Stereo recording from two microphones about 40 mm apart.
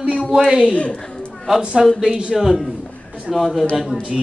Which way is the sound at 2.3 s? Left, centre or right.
Centre.